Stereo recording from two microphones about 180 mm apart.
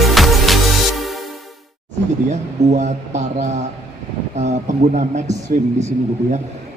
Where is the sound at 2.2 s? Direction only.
40° right (ahead or behind).